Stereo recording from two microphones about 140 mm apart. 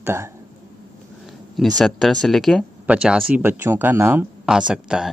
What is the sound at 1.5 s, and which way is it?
Speech, centre (ahead or behind).